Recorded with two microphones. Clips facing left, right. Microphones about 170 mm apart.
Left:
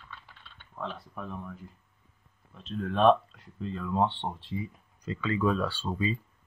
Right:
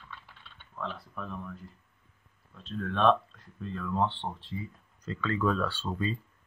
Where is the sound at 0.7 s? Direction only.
20° left (ahead or behind).